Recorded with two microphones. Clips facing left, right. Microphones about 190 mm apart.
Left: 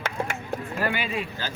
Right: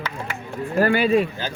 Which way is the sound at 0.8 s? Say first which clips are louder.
Right 12 dB; 40° right (ahead or behind).